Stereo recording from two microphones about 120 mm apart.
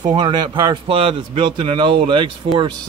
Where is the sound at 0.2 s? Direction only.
35° right (ahead or behind).